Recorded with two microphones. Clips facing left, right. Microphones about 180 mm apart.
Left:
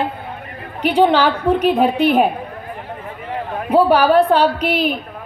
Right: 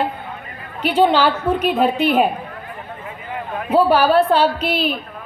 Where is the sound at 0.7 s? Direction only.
15° left (ahead or behind).